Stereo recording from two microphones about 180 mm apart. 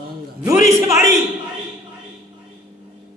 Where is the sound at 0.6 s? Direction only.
15° right (ahead or behind).